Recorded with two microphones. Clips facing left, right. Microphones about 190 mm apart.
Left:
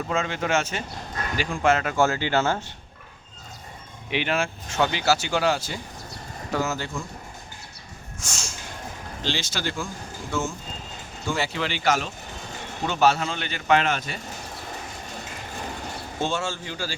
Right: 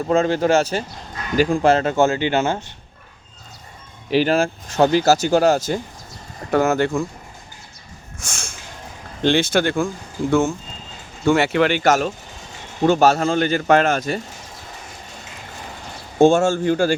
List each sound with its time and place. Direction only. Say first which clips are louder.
0.1 s speech: right 10 dB; 35° right (ahead or behind); by 2.6 s 15° right (ahead or behind)
4.1 s speech: right 9 dB; 35° right (ahead or behind)
6.5 s speech: right 10 dB; 60° right (ahead or behind)
8.2 s snort: right 1 dB; 55° right (ahead or behind)
9.2 s speech: right 12 dB; 55° right (ahead or behind)
11.3 s speech: right 11 dB; 65° right (ahead or behind); by 14.2 s 45° right (ahead or behind)
16.1 s speech: right 14 dB; 50° right (ahead or behind)